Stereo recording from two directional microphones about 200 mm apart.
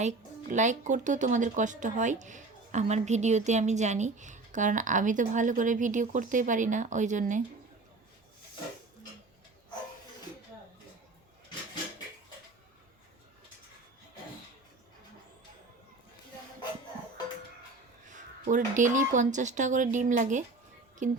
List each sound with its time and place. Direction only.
0.0 s speech: 35° right (ahead or behind)
18.1 s speech: 40° right (ahead or behind)